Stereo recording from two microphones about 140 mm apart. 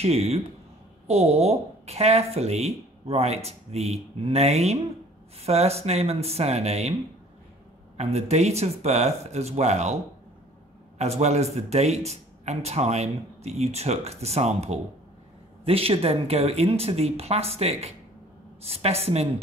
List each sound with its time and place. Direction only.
0.0 s speech: 45° right (ahead or behind)
8.0 s speech: 50° right (ahead or behind)
11.0 s speech: 50° right (ahead or behind)